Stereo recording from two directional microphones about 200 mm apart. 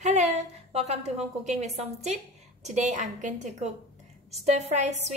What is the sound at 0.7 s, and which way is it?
A woman's voice, 30° right (ahead or behind).